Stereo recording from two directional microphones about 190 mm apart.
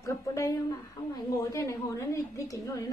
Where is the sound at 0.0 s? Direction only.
15° left (ahead or behind).